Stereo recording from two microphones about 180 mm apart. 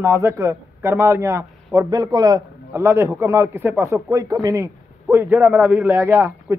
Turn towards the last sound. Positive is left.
turn(degrees=-15)  # may be behind; listen again after turning